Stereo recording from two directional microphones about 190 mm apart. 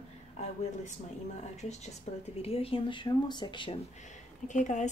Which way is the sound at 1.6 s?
35° left (ahead or behind).